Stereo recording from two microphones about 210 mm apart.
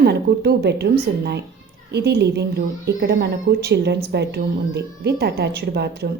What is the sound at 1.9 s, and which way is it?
A woman's voice, 50° right (ahead or behind).